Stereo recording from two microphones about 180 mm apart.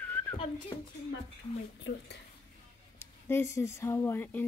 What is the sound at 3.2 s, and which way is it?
Speech, 15° left (ahead or behind).